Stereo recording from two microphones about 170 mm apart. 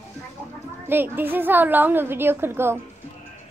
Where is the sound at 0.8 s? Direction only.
10° right (ahead or behind).